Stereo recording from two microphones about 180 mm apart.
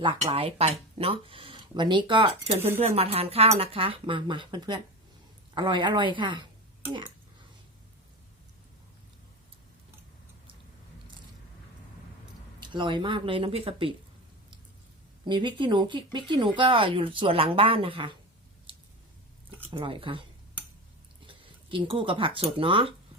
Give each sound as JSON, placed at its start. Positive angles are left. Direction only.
{"t": 0.2, "sound": "speech", "side_deg": -30}
{"t": 12.5, "sound": "speech", "side_deg": -25}
{"t": 15.3, "sound": "speech", "side_deg": -25}
{"t": 19.7, "sound": "speech", "side_deg": -30}
{"t": 21.2, "sound": "speech", "side_deg": -30}